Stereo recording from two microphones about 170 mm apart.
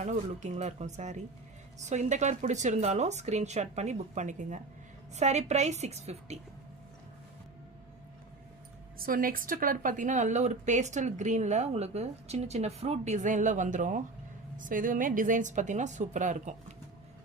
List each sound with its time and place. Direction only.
0.0 s a woman's voice: 45° right (ahead or behind)
9.0 s speech: 55° right (ahead or behind)